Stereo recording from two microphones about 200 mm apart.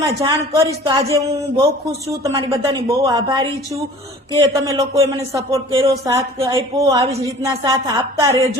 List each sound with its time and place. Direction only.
0.2 s speech: 20° right (ahead or behind)